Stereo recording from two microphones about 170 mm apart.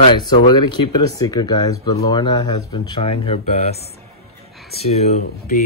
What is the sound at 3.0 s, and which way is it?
Speech, 35° left (ahead or behind).